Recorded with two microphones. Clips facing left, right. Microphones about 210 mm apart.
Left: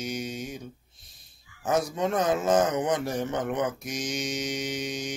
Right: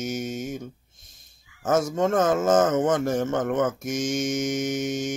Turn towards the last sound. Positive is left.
turn(degrees=-50)  # may be behind; listen again after turning